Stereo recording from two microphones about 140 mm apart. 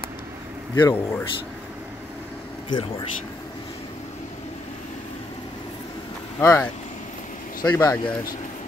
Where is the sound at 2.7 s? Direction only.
40° left (ahead or behind).